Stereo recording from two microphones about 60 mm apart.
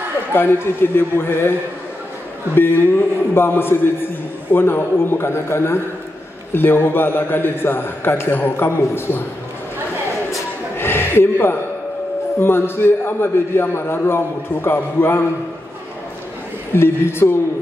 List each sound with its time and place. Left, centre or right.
0.3 s a man's voice: left
2.5 s a man's voice: left
10.8 s a sound: left
12.4 s a man's voice: left
16.7 s a woman's voice: left